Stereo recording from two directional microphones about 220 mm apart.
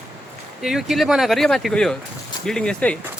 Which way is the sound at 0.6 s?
Centre (ahead or behind).